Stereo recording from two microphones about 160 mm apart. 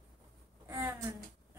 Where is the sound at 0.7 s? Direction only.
20° right (ahead or behind).